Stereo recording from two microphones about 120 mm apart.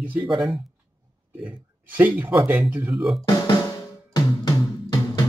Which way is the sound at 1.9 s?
15° right (ahead or behind).